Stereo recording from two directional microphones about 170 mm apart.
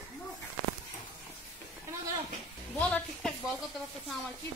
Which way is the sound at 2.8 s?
5° left (ahead or behind).